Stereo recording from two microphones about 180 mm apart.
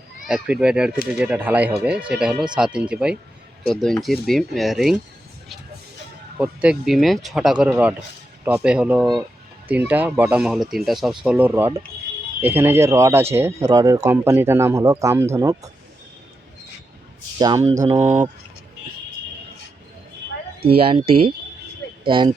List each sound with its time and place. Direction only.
0.3 s speech: 5° right (ahead or behind)
6.4 s speech: 5° right (ahead or behind)
17.3 s speech: 20° right (ahead or behind)
17.7 s speech: 35° right (ahead or behind)
17.9 s speech: 10° right (ahead or behind)
20.7 s speech: 30° right (ahead or behind)